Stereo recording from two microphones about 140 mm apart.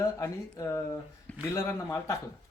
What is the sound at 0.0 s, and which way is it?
Speech, 20° left (ahead or behind).